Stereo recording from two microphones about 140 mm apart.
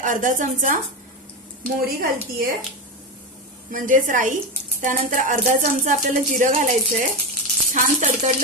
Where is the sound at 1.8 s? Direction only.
90° right.